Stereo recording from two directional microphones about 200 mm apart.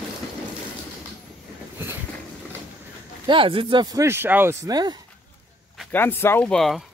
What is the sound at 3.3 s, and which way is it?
Speech, 25° right (ahead or behind).